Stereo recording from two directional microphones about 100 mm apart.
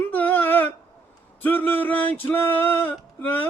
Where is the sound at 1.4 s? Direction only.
20° left (ahead or behind).